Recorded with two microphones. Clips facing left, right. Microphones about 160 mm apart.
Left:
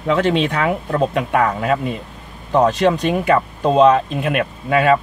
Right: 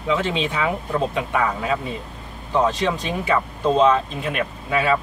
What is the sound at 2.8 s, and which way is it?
Speech, 65° left (ahead or behind).